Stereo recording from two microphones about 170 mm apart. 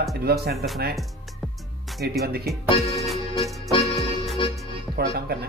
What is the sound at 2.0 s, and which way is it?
Speech, 65° right (ahead or behind).